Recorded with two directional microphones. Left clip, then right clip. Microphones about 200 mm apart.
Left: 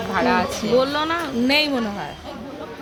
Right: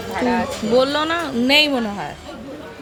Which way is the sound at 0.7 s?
20° right (ahead or behind).